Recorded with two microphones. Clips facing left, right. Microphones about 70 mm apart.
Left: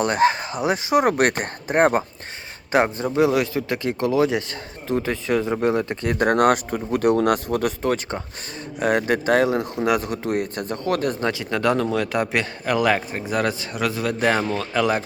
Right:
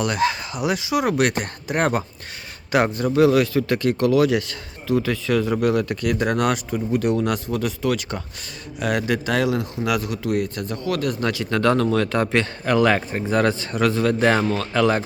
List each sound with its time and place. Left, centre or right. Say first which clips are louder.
0.0 s speech: left 3 dB; left
2.8 s speech: right 2 dB; left
6.1 s speech: left 6 dB; left
11.2 s speech: right 1 dB; left